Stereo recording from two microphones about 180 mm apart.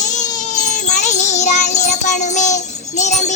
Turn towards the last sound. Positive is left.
turn(degrees=40)  # may be behind; listen again after turning